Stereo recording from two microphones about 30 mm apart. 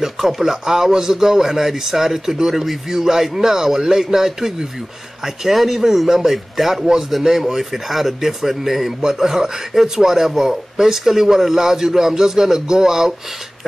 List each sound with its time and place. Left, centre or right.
0.4 s a man's voice: centre
2.5 s a man's voice: centre